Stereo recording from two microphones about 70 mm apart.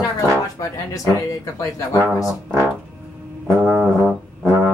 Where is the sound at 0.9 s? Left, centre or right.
Left.